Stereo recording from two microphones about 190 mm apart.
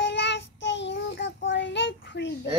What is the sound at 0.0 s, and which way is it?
Child singing, 70° left (ahead or behind).